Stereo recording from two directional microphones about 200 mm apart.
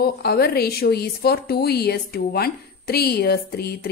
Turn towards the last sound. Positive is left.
turn(degrees=50)  # may be behind; listen again after turning